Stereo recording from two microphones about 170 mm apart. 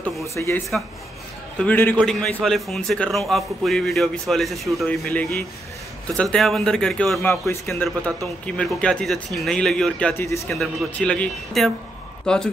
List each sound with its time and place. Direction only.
0.2 s a man's voice: 15° left (ahead or behind)
10.5 s a man's voice: 5° left (ahead or behind)